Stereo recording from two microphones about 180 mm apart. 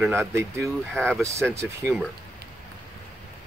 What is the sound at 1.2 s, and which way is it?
Speech, 15° right (ahead or behind).